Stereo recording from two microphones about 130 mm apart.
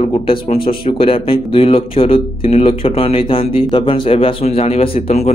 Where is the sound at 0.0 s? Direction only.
45° left (ahead or behind).